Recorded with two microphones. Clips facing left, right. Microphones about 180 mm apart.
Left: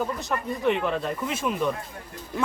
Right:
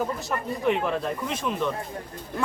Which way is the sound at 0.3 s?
Centre (ahead or behind).